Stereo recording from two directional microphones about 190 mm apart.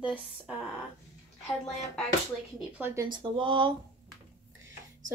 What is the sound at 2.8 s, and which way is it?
Speech, 15° right (ahead or behind).